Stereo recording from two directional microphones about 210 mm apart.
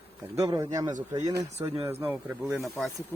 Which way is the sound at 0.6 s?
15° right (ahead or behind).